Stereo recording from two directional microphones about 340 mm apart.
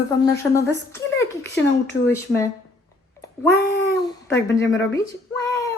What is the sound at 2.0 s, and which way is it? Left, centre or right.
Speech, centre.